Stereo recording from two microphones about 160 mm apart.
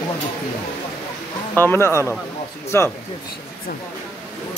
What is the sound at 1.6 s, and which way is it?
Speech, 15° left (ahead or behind).